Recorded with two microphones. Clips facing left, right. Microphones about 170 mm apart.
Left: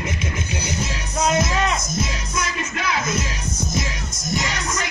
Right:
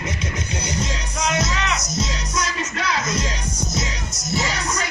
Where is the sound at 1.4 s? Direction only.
55° left (ahead or behind).